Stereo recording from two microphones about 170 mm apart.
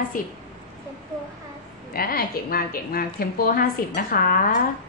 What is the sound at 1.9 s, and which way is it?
A woman's voice, 60° left (ahead or behind).